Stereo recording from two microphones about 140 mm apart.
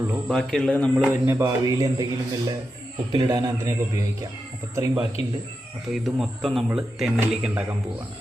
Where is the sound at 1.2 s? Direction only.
20° right (ahead or behind).